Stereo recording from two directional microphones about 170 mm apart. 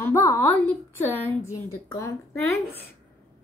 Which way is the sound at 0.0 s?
15° left (ahead or behind).